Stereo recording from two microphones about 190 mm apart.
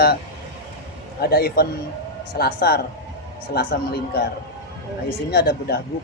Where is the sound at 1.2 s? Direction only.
55° left (ahead or behind).